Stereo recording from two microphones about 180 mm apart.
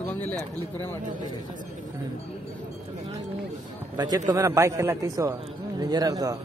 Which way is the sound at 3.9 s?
20° right (ahead or behind).